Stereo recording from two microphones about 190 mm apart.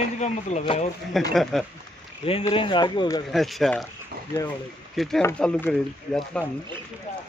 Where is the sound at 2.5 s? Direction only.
25° left (ahead or behind).